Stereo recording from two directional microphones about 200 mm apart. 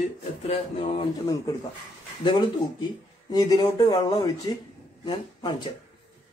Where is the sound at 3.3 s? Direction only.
20° left (ahead or behind).